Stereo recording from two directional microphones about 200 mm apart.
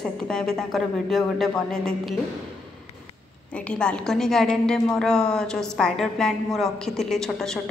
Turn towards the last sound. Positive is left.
turn(degrees=0)  # may be behind; listen again after turning